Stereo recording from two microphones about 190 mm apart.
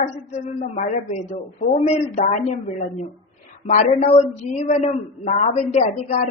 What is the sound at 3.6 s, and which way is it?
Speech, 40° left (ahead or behind).